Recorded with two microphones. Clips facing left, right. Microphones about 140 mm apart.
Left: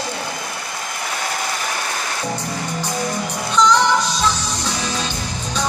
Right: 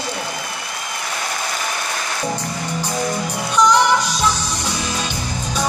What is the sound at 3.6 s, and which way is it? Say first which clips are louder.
Music: right 1 dB; 15° right (ahead or behind).